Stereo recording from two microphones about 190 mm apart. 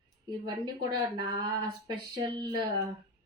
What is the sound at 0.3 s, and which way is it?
Speech, 20° right (ahead or behind).